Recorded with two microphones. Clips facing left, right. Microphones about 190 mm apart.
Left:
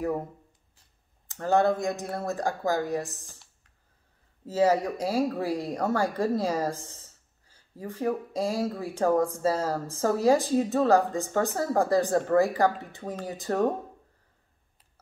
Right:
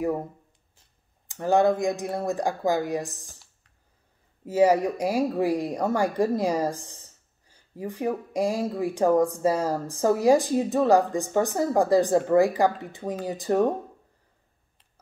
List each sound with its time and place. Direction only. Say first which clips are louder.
1.2 s speech: right 3 dB; 15° right (ahead or behind)
4.5 s speech: right 3 dB; 15° right (ahead or behind)